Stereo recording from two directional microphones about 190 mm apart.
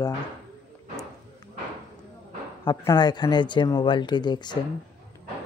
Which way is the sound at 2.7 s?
20° left (ahead or behind).